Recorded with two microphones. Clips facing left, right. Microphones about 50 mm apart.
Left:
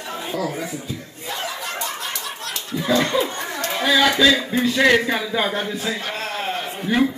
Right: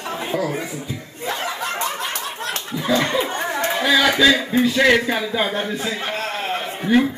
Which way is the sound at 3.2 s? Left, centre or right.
Right.